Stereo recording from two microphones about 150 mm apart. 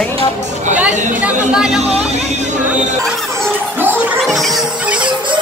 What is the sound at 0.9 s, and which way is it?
Speech, 55° right (ahead or behind).